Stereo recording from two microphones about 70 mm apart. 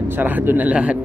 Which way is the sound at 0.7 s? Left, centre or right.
Centre.